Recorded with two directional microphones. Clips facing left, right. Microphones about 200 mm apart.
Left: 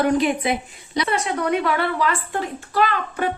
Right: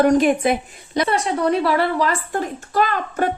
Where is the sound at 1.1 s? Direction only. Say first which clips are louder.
Right 2 dB; 30° right (ahead or behind).